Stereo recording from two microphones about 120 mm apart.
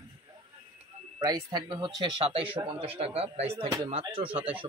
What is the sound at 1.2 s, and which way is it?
A man's voice, 40° right (ahead or behind).